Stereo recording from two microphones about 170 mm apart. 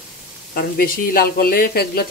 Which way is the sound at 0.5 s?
60° left (ahead or behind).